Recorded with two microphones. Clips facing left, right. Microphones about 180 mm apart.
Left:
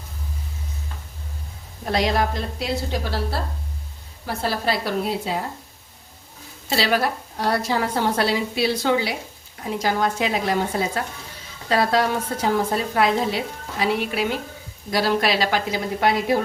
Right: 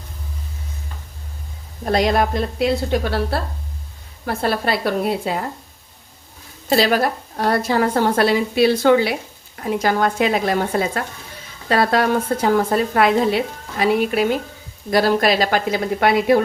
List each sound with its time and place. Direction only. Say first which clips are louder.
1.8 s a woman's voice: right 4 dB; 50° right (ahead or behind)
6.7 s a woman's voice: right 5 dB; 45° right (ahead or behind)
11.7 s a woman's voice: right 3 dB; 55° right (ahead or behind)